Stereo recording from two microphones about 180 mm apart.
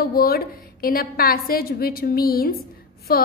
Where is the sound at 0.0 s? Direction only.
55° left (ahead or behind).